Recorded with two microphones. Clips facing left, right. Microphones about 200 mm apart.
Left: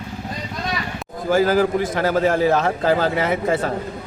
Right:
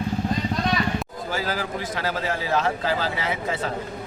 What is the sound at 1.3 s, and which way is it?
A man's voice, 50° left (ahead or behind).